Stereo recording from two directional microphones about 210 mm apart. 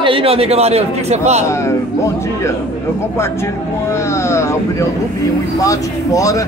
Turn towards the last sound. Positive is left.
turn(degrees=15)  # may be behind; listen again after turning